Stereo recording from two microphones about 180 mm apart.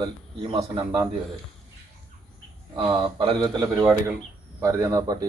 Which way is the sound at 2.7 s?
30° right (ahead or behind).